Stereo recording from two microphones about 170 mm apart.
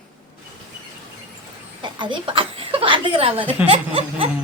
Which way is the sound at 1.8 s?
30° right (ahead or behind).